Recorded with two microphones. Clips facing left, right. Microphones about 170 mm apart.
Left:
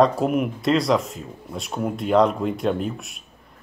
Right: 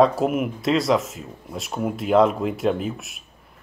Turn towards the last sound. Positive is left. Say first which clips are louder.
# left 1 dB
turn(degrees=0)  # may be behind; listen again after turning